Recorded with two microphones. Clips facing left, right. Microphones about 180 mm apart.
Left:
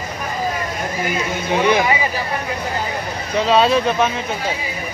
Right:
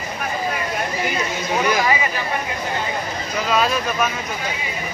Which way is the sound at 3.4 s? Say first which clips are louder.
Left 6 dB; 30° left (ahead or behind).